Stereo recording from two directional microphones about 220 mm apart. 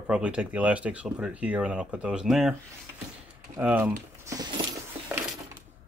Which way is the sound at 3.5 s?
10° right (ahead or behind).